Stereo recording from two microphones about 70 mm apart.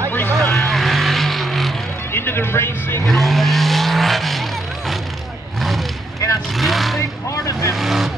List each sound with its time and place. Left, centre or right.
0.4 s vehicle: centre
2.1 s a sound: left
3.1 s vehicle: centre
7.0 s vehicle: left
7.7 s vehicle: centre